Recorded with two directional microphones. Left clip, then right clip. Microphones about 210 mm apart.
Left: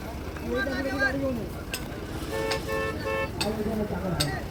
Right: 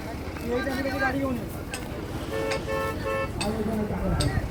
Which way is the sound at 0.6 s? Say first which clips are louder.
Left 1 dB; 50° left (ahead or behind).